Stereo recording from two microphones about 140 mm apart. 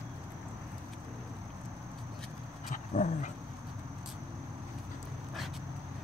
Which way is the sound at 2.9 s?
45° left (ahead or behind).